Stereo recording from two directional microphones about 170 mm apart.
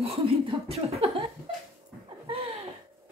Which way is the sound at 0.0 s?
35° right (ahead or behind).